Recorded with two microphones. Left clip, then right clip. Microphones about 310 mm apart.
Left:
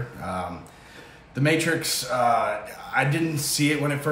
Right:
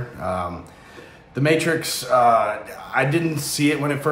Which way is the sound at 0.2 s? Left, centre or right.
Centre.